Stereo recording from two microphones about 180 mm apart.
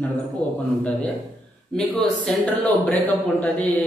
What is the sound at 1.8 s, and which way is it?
Speech, 5° left (ahead or behind).